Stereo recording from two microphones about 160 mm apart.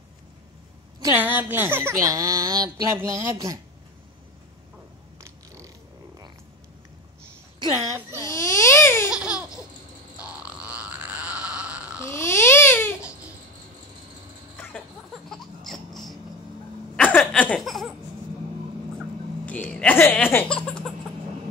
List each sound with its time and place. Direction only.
1.0 s speech: 10° right (ahead or behind)
5.2 s a sound: 20° right (ahead or behind)
7.7 s speech: 15° right (ahead or behind)
8.2 s baby cry: 20° left (ahead or behind)
9.1 s laughter: 5° right (ahead or behind)
10.1 s grunt: 5° right (ahead or behind)
12.0 s baby cry: 15° left (ahead or behind)
15.2 s a sound: centre (ahead or behind)
16.9 s laughter: 5° left (ahead or behind)
18.9 s music: 10° left (ahead or behind)